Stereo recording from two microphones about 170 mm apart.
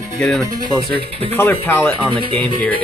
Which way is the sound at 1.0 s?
35° right (ahead or behind).